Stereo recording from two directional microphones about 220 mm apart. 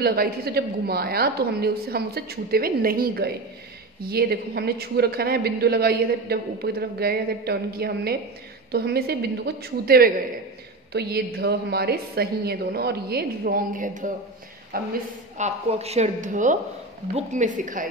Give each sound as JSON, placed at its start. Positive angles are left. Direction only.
{"t": 0.0, "sound": "a woman's voice", "side_deg": -45}
{"t": 15.3, "sound": "a woman's voice", "side_deg": -30}